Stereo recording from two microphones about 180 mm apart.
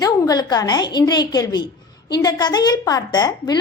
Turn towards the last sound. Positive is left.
turn(degrees=20)  # may be behind; listen again after turning